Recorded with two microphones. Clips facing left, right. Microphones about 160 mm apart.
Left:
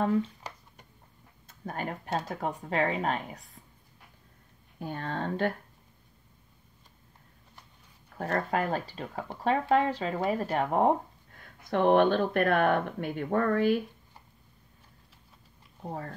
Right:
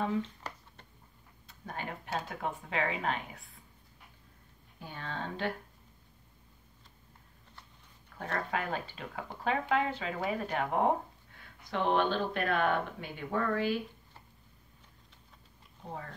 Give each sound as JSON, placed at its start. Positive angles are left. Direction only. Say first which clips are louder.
{"t": 0.2, "sound": "a sound", "louder": "left 4 dB", "side_deg": 10}
{"t": 1.5, "sound": "speech", "louder": "left 5 dB", "side_deg": 45}
{"t": 4.7, "sound": "speech", "louder": "left 7 dB", "side_deg": 50}
{"t": 8.2, "sound": "speech", "louder": "left 6 dB", "side_deg": 45}
{"t": 11.3, "sound": "speech", "louder": "left 6 dB", "side_deg": 50}
{"t": 15.9, "sound": "speech", "louder": "left 5 dB", "side_deg": 45}